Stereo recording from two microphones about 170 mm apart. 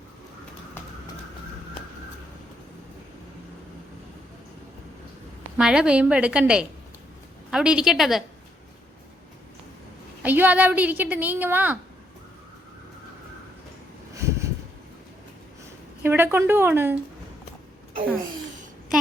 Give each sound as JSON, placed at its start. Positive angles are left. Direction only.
{"t": 5.5, "sound": "a woman's voice", "side_deg": -5}
{"t": 10.2, "sound": "a woman's voice", "side_deg": -10}
{"t": 14.1, "sound": "a sound", "side_deg": -15}
{"t": 16.0, "sound": "a woman's voice", "side_deg": -15}